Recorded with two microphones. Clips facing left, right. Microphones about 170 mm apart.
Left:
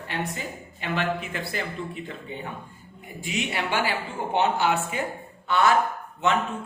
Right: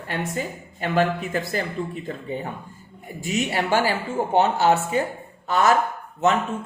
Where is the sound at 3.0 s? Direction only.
45° right (ahead or behind).